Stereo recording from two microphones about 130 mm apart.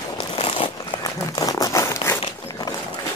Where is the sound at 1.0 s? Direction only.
30° left (ahead or behind).